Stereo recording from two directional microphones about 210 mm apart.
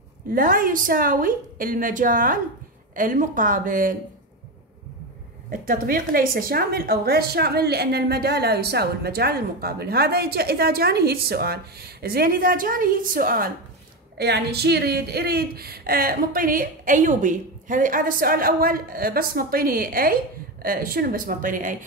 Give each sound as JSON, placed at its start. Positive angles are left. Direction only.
{"t": 0.3, "sound": "a woman's voice", "side_deg": -40}
{"t": 5.5, "sound": "a woman's voice", "side_deg": -40}